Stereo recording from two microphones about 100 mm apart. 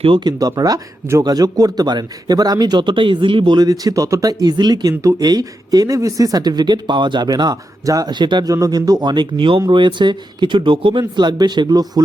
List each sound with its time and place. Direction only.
0.0 s speech: 60° right (ahead or behind)
0.3 s speech: 40° right (ahead or behind)
8.5 s speech: 35° right (ahead or behind)
9.0 s speech: 50° right (ahead or behind)